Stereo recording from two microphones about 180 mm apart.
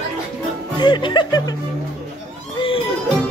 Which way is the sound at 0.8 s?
25° left (ahead or behind).